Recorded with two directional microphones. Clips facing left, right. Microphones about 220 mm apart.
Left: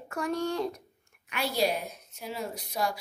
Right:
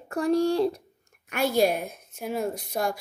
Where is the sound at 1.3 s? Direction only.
50° right (ahead or behind).